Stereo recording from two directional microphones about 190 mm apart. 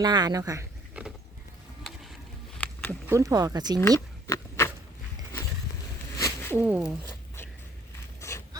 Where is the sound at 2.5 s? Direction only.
10° left (ahead or behind).